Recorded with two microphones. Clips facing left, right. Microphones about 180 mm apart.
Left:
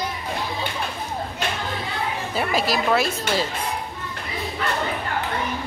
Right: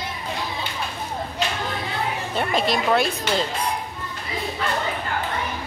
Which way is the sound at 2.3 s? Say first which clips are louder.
Even; 5° left (ahead or behind).